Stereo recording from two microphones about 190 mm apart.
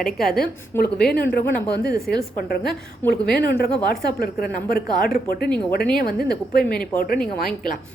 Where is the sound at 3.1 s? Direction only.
55° left (ahead or behind).